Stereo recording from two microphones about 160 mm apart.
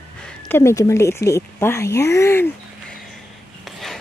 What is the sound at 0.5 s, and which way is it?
Speech, 15° left (ahead or behind).